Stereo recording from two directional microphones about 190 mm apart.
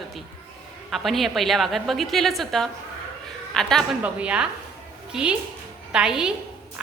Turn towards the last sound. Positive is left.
turn(degrees=-5)  # may be behind; listen again after turning